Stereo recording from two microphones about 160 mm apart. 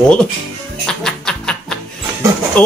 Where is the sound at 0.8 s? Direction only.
5° left (ahead or behind).